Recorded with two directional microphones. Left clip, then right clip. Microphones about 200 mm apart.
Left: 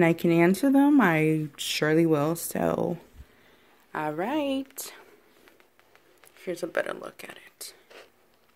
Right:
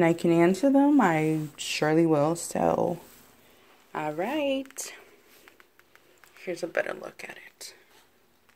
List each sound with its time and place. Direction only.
0.0 s speech: 15° left (ahead or behind)
6.4 s speech: 25° left (ahead or behind)